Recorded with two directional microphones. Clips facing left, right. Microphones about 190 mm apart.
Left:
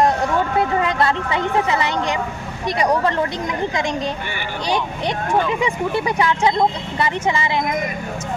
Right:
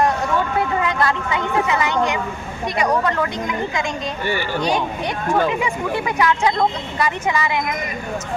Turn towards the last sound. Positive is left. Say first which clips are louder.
# left 1 dB
turn(degrees=25)  # may be behind; listen again after turning